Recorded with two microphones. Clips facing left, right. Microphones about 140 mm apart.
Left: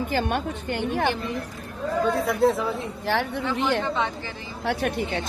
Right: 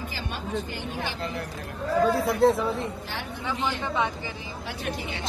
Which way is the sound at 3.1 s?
70° left (ahead or behind).